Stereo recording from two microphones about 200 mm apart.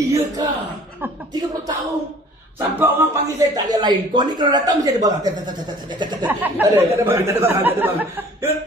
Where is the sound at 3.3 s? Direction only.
20° right (ahead or behind).